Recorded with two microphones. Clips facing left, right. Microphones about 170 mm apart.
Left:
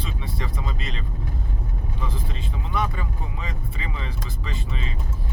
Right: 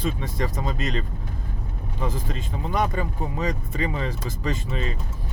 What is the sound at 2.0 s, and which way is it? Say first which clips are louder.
Speech: right 6 dB; 45° right (ahead or behind).